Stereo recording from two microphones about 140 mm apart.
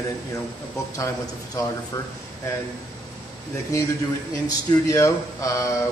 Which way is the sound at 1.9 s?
25° left (ahead or behind).